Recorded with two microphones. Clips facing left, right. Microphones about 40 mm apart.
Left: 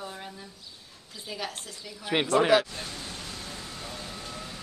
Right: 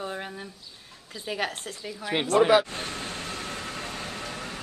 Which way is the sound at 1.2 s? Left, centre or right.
Right.